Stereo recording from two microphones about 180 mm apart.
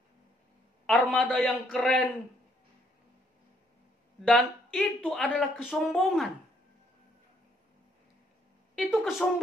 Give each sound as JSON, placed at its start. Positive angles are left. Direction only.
{"t": 0.8, "sound": "a man's voice", "side_deg": 0}
{"t": 4.2, "sound": "a man's voice", "side_deg": 0}
{"t": 8.7, "sound": "a woman's voice", "side_deg": 0}